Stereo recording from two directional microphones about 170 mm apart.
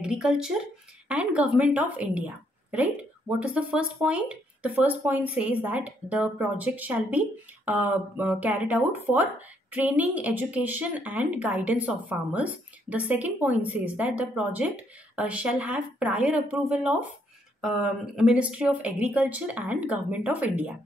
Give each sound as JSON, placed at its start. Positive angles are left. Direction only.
{"t": 0.0, "sound": "a woman's voice", "side_deg": -5}